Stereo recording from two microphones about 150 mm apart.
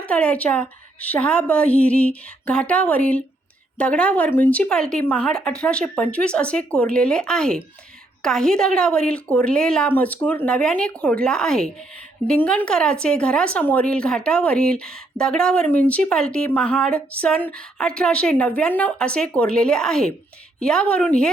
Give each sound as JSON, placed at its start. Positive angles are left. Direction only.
{"t": 0.0, "sound": "a woman's voice", "side_deg": 10}